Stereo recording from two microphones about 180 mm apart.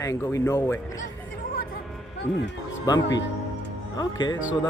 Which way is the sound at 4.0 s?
25° left (ahead or behind).